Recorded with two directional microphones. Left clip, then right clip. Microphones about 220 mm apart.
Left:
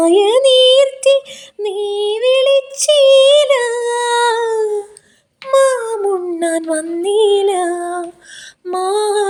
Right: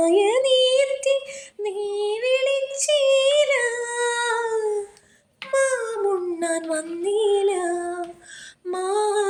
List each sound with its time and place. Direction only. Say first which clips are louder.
0.0 s female singing: left 8 dB; 45° left (ahead or behind)
5.5 s child singing: left 9 dB; 45° left (ahead or behind)
8.6 s female singing: left 7 dB; 40° left (ahead or behind)